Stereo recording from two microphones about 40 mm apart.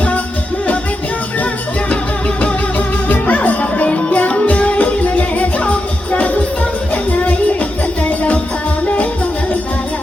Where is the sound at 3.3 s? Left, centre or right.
Left.